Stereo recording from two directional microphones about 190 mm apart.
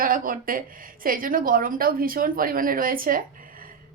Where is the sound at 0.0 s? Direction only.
50° right (ahead or behind).